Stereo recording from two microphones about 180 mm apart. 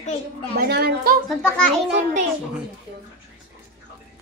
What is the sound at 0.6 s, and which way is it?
Speech, 60° right (ahead or behind).